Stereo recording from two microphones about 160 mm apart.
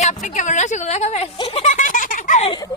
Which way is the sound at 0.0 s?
50° left (ahead or behind).